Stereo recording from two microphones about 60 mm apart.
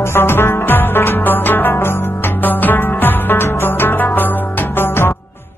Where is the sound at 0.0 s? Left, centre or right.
Left.